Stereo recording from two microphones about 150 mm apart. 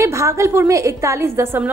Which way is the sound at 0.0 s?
20° right (ahead or behind).